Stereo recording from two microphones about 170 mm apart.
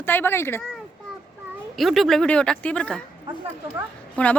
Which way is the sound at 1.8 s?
Centre (ahead or behind).